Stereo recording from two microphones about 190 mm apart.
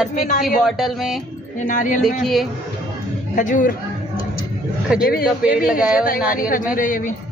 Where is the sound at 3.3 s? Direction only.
40° left (ahead or behind).